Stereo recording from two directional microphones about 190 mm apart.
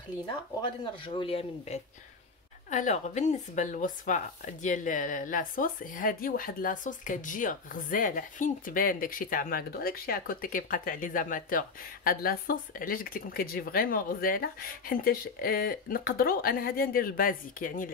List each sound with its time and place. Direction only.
0.6 s a man's voice: 25° left (ahead or behind); by 17.9 s 45° left (ahead or behind)